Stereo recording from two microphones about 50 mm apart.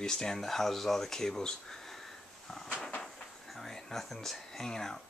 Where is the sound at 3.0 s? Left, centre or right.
Centre.